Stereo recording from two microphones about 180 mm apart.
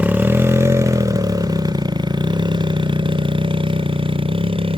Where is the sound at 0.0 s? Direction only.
10° right (ahead or behind).